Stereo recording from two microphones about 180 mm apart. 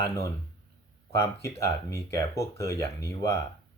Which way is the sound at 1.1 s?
15° left (ahead or behind).